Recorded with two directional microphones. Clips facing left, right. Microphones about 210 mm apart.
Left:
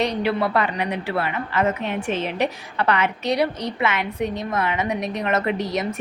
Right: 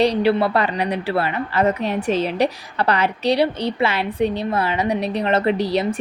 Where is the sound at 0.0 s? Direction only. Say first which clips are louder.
Right 5 dB; 30° right (ahead or behind).